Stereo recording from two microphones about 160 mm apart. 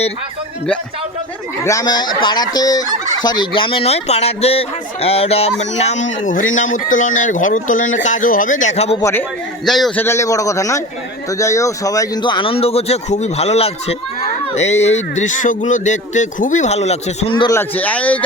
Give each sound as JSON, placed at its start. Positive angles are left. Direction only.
{"t": 1.6, "sound": "speech", "side_deg": 25}
{"t": 9.0, "sound": "speech", "side_deg": 20}
{"t": 9.6, "sound": "a man's voice", "side_deg": 0}
{"t": 10.0, "sound": "speech", "side_deg": 15}
{"t": 17.5, "sound": "speech", "side_deg": 10}